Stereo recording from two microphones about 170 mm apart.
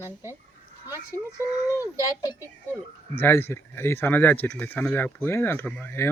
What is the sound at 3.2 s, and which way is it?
Speech, 15° left (ahead or behind).